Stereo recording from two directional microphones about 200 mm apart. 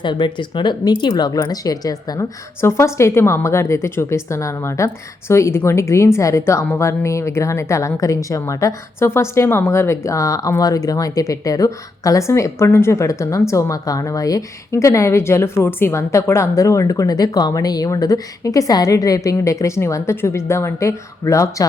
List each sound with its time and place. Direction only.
0.0 s a woman's voice: 25° left (ahead or behind)